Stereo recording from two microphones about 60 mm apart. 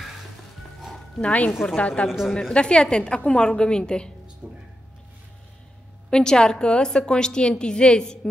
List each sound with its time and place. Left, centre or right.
0.7 s music: centre
1.2 s a woman's voice: left
1.5 s a woman's voice: centre
1.8 s a woman's voice: left
2.0 s a woman's voice: centre
2.5 s a woman's voice: centre
4.4 s speech: right
6.0 s a woman's voice: centre